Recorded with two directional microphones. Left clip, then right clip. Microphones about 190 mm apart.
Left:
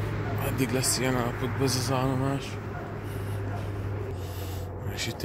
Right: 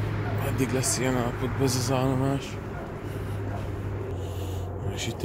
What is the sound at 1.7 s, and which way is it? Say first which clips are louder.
Mantra: right 2 dB; 20° right (ahead or behind).